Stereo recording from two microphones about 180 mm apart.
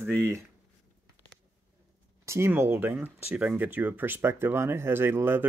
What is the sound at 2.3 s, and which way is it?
Speech, 15° right (ahead or behind).